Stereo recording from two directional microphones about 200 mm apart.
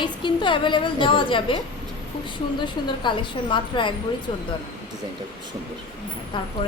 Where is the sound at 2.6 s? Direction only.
25° left (ahead or behind).